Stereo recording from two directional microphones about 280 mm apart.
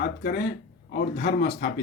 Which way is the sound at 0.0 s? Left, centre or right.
Left.